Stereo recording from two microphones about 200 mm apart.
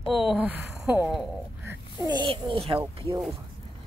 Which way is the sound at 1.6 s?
20° right (ahead or behind).